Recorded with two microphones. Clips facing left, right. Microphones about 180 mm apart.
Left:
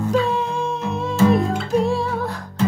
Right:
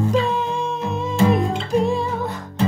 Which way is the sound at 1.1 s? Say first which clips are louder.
Left 2 dB; 20° right (ahead or behind).